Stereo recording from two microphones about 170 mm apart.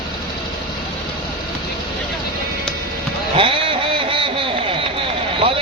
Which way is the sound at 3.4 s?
30° right (ahead or behind).